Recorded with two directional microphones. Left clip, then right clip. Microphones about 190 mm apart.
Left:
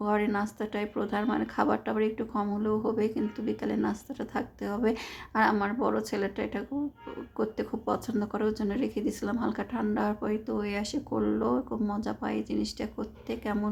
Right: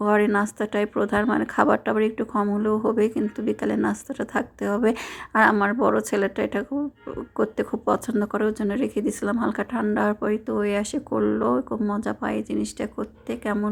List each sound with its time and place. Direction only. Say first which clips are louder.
0.0 s speech: right 8 dB; 35° right (ahead or behind)